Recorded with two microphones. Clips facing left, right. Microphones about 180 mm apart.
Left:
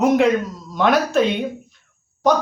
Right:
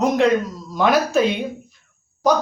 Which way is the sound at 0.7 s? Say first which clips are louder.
Even; centre (ahead or behind).